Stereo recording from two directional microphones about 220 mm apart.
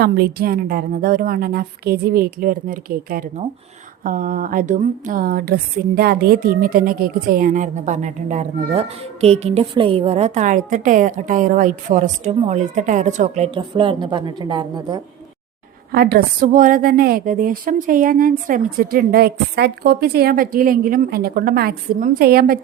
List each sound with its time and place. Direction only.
0.0 s a woman's voice: 45° right (ahead or behind)
13.5 s a woman's voice: 20° right (ahead or behind)
15.9 s a woman's voice: 45° right (ahead or behind)